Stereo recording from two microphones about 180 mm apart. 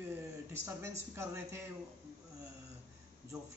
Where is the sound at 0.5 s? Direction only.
15° right (ahead or behind).